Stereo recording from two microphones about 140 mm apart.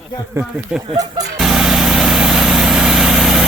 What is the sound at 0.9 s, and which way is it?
Speech, 25° right (ahead or behind).